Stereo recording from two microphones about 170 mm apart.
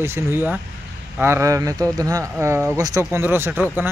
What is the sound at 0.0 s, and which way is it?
Speech, 15° right (ahead or behind).